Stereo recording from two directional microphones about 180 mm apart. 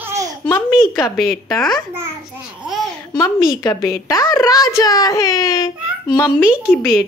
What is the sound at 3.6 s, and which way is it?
A child's voice, 20° left (ahead or behind).